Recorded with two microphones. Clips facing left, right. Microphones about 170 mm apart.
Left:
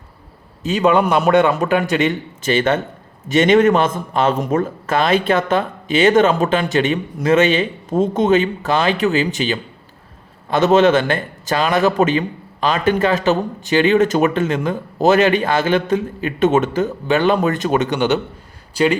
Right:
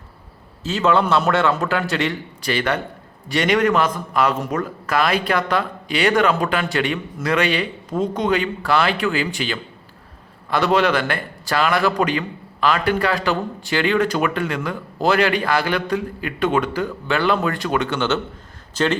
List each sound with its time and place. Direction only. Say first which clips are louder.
0.6 s a man's voice: left 3 dB; 15° left (ahead or behind)